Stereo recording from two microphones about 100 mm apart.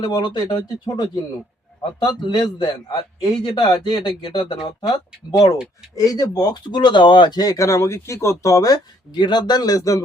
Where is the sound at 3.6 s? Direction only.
45° left (ahead or behind).